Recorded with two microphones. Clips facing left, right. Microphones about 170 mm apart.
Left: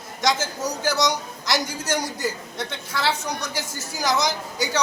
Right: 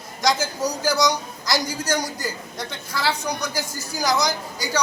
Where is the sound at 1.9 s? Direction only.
5° left (ahead or behind).